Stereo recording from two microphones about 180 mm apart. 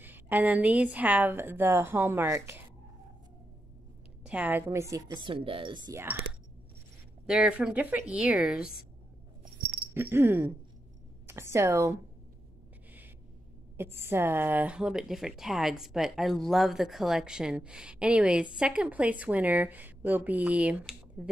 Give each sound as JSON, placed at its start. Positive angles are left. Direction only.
{"t": 0.0, "sound": "a woman's voice", "side_deg": -10}
{"t": 4.2, "sound": "a woman's voice", "side_deg": -10}
{"t": 7.2, "sound": "speech", "side_deg": -5}
{"t": 9.9, "sound": "speech", "side_deg": -10}
{"t": 13.7, "sound": "speech", "side_deg": -15}